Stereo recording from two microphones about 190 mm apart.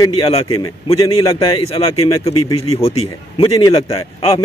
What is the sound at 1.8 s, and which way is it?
A man's voice, 25° left (ahead or behind).